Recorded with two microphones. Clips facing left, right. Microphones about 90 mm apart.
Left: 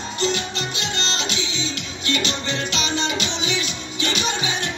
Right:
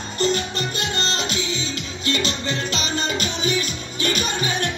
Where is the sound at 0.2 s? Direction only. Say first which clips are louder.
Right 3 dB; 45° right (ahead or behind).